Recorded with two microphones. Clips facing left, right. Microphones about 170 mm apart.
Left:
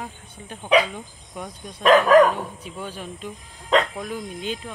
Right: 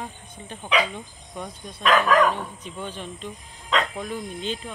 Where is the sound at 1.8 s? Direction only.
40° left (ahead or behind).